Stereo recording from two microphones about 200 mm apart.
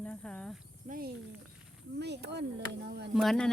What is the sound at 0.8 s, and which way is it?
Speech, 45° right (ahead or behind).